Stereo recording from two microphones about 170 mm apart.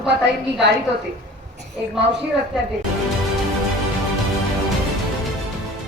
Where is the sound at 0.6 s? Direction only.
90° right.